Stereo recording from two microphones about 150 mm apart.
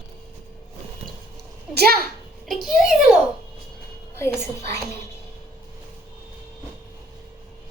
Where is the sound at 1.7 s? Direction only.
90° right.